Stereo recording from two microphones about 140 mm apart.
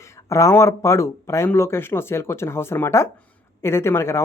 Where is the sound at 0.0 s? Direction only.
20° left (ahead or behind).